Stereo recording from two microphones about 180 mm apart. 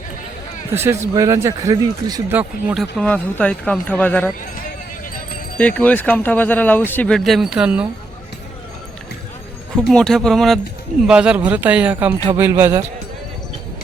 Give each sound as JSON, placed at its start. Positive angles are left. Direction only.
{"t": 0.7, "sound": "speech", "side_deg": -15}
{"t": 2.4, "sound": "speech", "side_deg": -5}
{"t": 3.0, "sound": "speech", "side_deg": 10}
{"t": 5.5, "sound": "speech", "side_deg": 10}
{"t": 9.7, "sound": "speech", "side_deg": 5}